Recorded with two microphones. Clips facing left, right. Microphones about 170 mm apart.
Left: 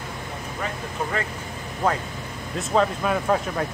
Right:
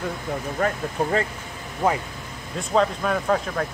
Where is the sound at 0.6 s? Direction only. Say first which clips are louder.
Right 8 dB; 50° right (ahead or behind).